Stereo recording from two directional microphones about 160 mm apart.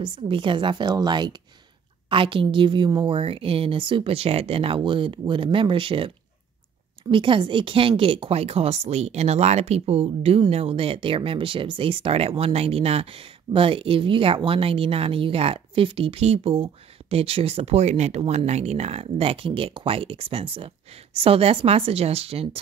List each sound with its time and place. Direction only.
0.0 s speech: 30° right (ahead or behind)